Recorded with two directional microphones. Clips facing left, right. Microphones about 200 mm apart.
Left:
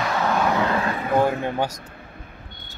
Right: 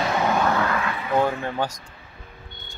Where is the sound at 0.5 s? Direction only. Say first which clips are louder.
Left 2 dB; 20° left (ahead or behind).